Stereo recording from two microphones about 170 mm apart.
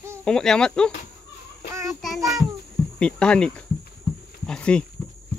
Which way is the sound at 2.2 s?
20° right (ahead or behind).